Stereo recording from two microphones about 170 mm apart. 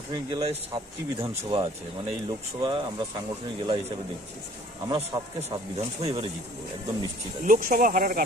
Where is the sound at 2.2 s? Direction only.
30° right (ahead or behind).